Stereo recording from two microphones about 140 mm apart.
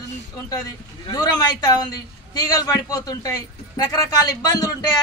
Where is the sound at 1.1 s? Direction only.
30° left (ahead or behind).